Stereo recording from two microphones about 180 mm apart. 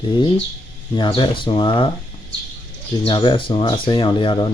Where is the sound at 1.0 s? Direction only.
25° left (ahead or behind).